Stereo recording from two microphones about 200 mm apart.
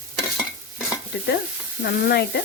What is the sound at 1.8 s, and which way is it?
Speech, 50° left (ahead or behind).